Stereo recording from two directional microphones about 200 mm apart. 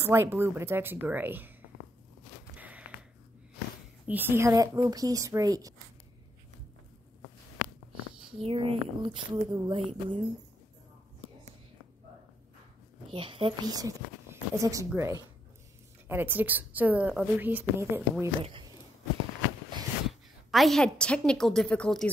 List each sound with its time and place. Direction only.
0.0 s a woman's voice: 10° right (ahead or behind)
2.5 s a sound: 5° right (ahead or behind)
4.1 s a woman's voice: 10° right (ahead or behind)
8.3 s speech: 25° right (ahead or behind)
13.1 s a woman's voice: 25° right (ahead or behind)
18.4 s speech: 25° right (ahead or behind)
20.1 s a woman's voice: centre (ahead or behind)